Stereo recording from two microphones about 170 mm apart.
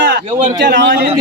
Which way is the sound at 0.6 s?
90° right.